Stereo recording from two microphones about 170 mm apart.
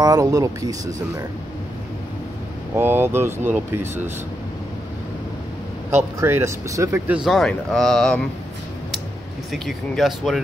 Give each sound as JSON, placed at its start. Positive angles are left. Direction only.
{"t": 0.0, "sound": "speech", "side_deg": -20}
{"t": 2.7, "sound": "speech", "side_deg": -15}
{"t": 6.1, "sound": "speech", "side_deg": -15}
{"t": 7.2, "sound": "speech", "side_deg": 0}
{"t": 9.5, "sound": "speech", "side_deg": 0}